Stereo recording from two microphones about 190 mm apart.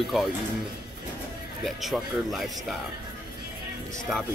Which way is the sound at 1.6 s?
Centre (ahead or behind).